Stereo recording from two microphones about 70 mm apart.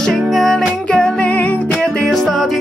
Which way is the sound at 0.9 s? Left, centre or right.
Centre.